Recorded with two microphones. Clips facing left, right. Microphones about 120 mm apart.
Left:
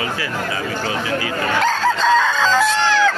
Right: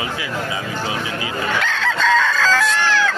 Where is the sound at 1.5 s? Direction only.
35° left (ahead or behind).